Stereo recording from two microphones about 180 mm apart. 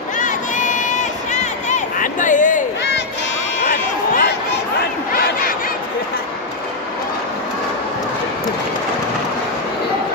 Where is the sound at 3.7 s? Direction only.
50° left (ahead or behind).